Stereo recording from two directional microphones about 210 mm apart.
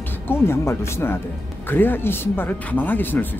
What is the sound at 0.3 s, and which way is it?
Speech, 10° left (ahead or behind).